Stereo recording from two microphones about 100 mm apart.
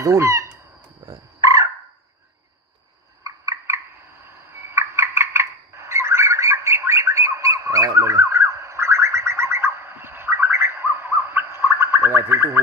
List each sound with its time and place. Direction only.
0.0 s speech: 30° right (ahead or behind)
1.0 s fowl: 35° right (ahead or behind)
3.3 s a sound: 30° right (ahead or behind)
4.3 s fowl: 25° right (ahead or behind)